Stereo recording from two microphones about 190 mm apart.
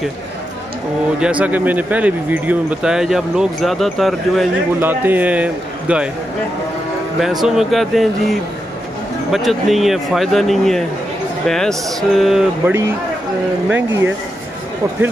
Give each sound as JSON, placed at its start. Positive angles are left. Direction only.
{"t": 1.2, "sound": "speech", "side_deg": -5}
{"t": 4.7, "sound": "speech", "side_deg": -10}
{"t": 7.2, "sound": "speech", "side_deg": 0}